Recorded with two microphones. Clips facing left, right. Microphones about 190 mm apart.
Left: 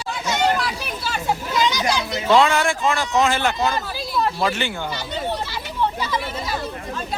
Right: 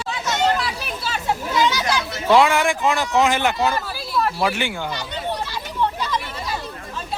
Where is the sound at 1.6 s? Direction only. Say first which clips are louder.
Left 1 dB; 15° left (ahead or behind).